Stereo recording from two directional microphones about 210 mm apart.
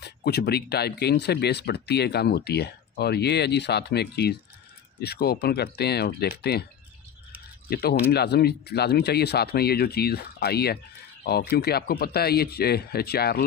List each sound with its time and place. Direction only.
0.0 s speech: 50° left (ahead or behind)
7.7 s speech: 45° left (ahead or behind)